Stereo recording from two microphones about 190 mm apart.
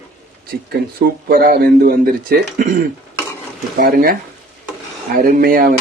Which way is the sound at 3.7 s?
55° right (ahead or behind).